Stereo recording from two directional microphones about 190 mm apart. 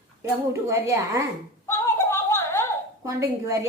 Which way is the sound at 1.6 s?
15° left (ahead or behind).